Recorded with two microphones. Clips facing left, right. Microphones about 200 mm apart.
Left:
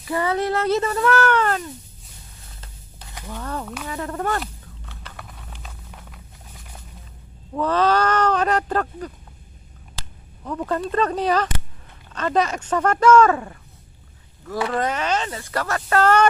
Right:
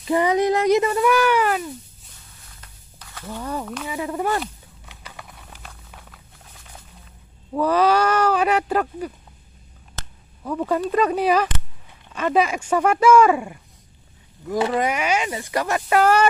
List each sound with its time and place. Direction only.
0.0 s speech: 20° right (ahead or behind)
2.6 s a sound: 25° left (ahead or behind)
3.3 s speech: 10° right (ahead or behind)
3.8 s a sound: 10° right (ahead or behind)
7.5 s speech: 10° right (ahead or behind)
10.4 s speech: 10° right (ahead or behind)